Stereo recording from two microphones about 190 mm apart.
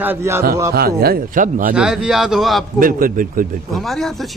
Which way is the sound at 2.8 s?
45° right (ahead or behind).